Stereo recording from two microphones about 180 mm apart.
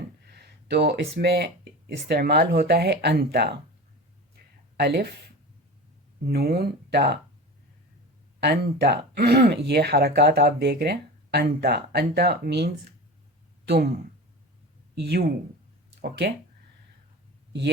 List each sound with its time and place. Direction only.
0.7 s speech: 65° right (ahead or behind)
4.8 s speech: 65° right (ahead or behind)
6.2 s speech: 60° right (ahead or behind)
8.4 s speech: 65° right (ahead or behind)
14.9 s speech: 65° right (ahead or behind)